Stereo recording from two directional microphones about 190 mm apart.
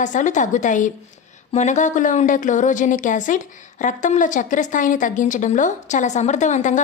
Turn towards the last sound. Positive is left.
turn(degrees=40)  # may be behind; listen again after turning